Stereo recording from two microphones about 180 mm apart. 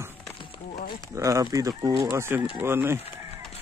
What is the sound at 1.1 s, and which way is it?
Speech, 15° right (ahead or behind).